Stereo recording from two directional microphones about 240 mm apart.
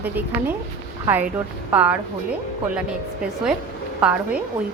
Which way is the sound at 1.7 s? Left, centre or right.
Centre.